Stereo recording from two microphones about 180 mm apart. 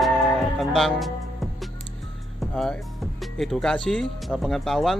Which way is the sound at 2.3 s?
Centre (ahead or behind).